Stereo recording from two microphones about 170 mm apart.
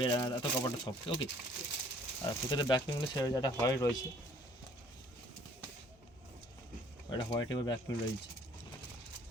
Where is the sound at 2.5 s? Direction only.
25° left (ahead or behind).